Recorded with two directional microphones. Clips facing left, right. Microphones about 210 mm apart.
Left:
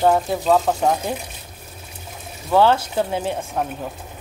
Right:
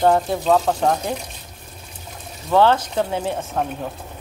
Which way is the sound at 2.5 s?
10° left (ahead or behind).